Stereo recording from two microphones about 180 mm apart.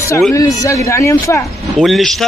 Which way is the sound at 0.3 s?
20° left (ahead or behind).